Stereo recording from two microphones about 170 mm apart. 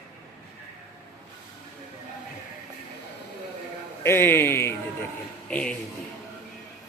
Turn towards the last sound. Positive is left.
turn(degrees=5)  # may be behind; listen again after turning